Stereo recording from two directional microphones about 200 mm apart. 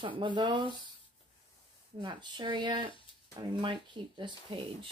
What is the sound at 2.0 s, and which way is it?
Speech, 20° right (ahead or behind).